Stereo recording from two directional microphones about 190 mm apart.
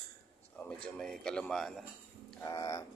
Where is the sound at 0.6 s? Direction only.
5° left (ahead or behind).